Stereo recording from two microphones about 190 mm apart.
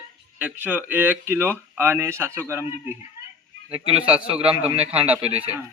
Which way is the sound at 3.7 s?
30° right (ahead or behind).